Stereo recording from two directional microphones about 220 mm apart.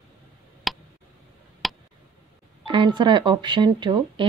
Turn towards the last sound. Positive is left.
turn(degrees=-20)  # may be behind; listen again after turning